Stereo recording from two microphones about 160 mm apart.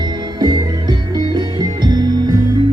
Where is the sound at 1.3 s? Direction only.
25° right (ahead or behind).